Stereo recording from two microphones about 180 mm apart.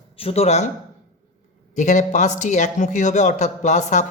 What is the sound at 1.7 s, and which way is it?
A man's voice, 40° left (ahead or behind).